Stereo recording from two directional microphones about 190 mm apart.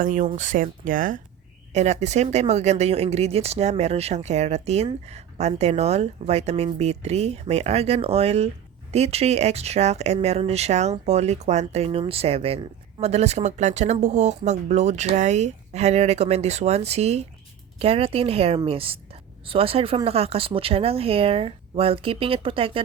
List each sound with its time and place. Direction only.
0.0 s speech: 45° right (ahead or behind)